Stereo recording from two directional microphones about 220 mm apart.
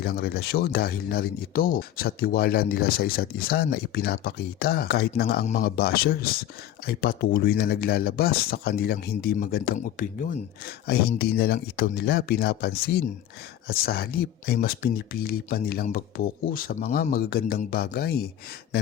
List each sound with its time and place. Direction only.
0.0 s speech: 45° left (ahead or behind)